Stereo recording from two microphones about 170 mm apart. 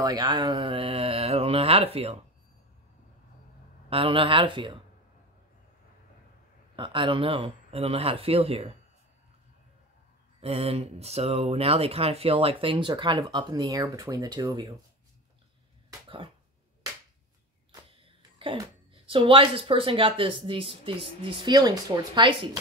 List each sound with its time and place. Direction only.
0.0 s speech: 25° right (ahead or behind)
3.9 s speech: 30° right (ahead or behind)
6.8 s speech: 30° right (ahead or behind)
10.4 s speech: 35° right (ahead or behind)
18.0 s a sound: 30° right (ahead or behind)
19.0 s speech: 30° right (ahead or behind)